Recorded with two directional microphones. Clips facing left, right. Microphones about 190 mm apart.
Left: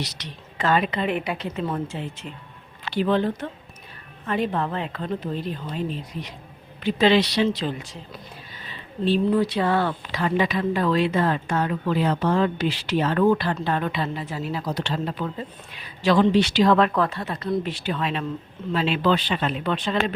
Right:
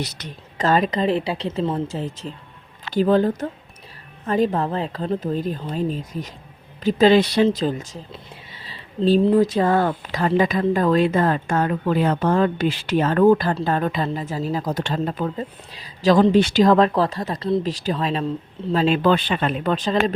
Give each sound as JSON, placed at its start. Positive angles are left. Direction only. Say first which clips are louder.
{"t": 0.0, "sound": "a woman's voice", "louder": "right 3 dB", "side_deg": -50}